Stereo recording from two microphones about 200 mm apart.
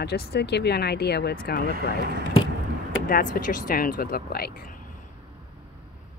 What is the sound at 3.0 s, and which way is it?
Speech, 45° left (ahead or behind).